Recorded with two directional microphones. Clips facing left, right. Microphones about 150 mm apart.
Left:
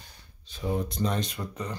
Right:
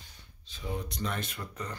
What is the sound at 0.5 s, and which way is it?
Speech, 55° left (ahead or behind).